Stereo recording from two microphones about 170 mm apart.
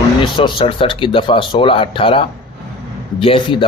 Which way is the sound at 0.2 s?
30° left (ahead or behind).